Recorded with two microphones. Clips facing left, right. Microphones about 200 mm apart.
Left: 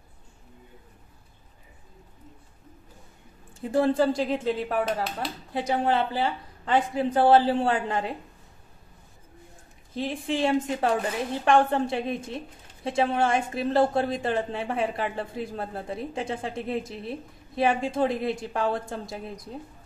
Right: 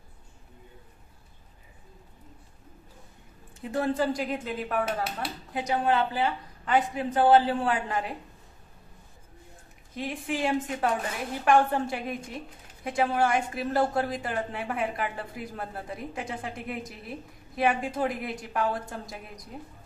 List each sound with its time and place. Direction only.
3.7 s a woman's voice: 30° left (ahead or behind)
9.9 s a woman's voice: 30° left (ahead or behind)